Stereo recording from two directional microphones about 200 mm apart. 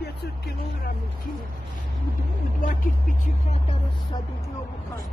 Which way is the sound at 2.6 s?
40° left (ahead or behind).